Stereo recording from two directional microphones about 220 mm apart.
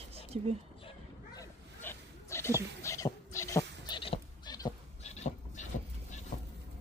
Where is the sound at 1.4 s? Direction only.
10° left (ahead or behind).